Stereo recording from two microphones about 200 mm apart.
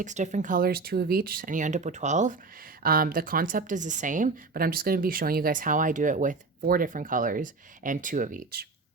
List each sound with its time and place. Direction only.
0.0 s a woman's voice: 35° right (ahead or behind)